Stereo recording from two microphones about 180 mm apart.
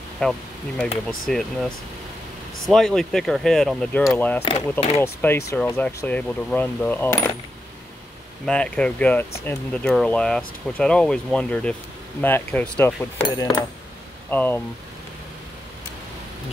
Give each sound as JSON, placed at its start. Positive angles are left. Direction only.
{"t": 0.2, "sound": "speech", "side_deg": 5}
{"t": 8.5, "sound": "speech", "side_deg": 5}
{"t": 13.3, "sound": "speech", "side_deg": 20}
{"t": 14.3, "sound": "speech", "side_deg": 10}